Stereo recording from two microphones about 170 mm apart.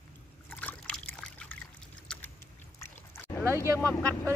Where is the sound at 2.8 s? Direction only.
15° left (ahead or behind).